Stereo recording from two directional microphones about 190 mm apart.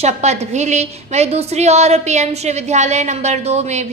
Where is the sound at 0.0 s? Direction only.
35° right (ahead or behind).